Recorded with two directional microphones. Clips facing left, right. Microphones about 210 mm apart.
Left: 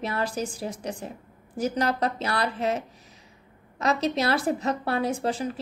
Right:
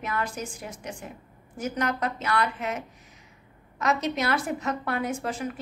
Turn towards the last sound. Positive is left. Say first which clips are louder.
# left 3 dB
turn(degrees=30)  # may be behind; listen again after turning